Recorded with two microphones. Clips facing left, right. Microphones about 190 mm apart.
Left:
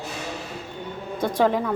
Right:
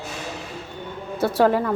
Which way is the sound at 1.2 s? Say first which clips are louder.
Right 3 dB; 5° right (ahead or behind).